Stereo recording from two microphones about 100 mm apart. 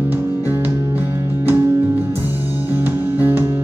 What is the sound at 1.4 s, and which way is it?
Music, 25° right (ahead or behind).